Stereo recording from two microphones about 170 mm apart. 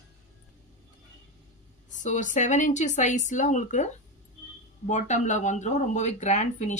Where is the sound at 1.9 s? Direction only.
45° left (ahead or behind).